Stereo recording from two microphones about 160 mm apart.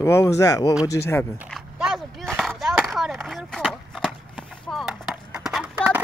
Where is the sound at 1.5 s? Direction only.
5° right (ahead or behind).